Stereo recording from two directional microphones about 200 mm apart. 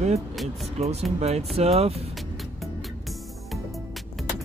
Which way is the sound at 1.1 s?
30° right (ahead or behind).